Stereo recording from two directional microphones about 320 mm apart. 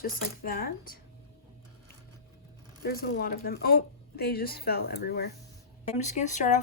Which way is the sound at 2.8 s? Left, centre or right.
Left.